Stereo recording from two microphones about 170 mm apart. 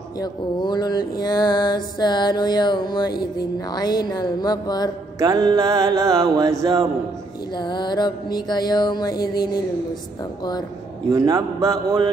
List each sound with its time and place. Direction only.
0.2 s mantra: 25° left (ahead or behind)
5.2 s music: 20° right (ahead or behind)
7.5 s mantra: 25° left (ahead or behind)
11.1 s music: 20° right (ahead or behind)